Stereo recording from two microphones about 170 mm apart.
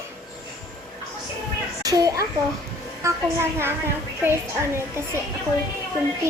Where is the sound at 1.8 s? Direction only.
20° right (ahead or behind).